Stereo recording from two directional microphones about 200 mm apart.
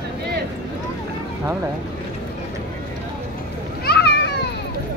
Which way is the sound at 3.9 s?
55° left (ahead or behind).